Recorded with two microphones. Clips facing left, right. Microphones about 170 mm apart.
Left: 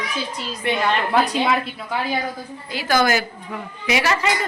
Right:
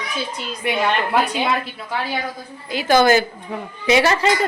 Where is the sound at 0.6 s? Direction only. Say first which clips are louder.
Even; 10° right (ahead or behind).